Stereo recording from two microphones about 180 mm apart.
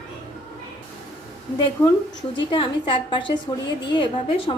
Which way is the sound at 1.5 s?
20° left (ahead or behind).